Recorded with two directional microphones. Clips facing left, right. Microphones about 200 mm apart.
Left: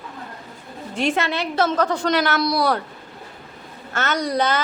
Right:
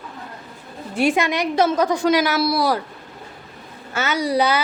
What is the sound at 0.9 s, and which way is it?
A woman's voice, 10° right (ahead or behind).